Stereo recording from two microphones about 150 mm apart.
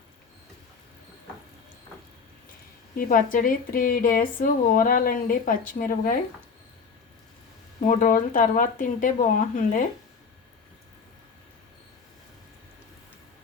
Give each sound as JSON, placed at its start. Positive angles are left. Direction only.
{"t": 2.9, "sound": "speech", "side_deg": 70}
{"t": 7.9, "sound": "speech", "side_deg": 60}